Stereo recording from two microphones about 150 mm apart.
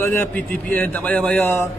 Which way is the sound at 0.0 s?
15° left (ahead or behind).